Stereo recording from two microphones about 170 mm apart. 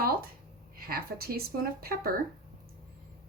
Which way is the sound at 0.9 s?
60° right (ahead or behind).